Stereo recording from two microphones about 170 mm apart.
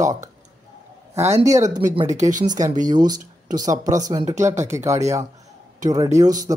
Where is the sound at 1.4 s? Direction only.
20° right (ahead or behind).